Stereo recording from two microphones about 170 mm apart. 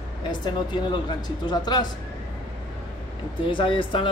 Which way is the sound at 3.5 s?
30° left (ahead or behind).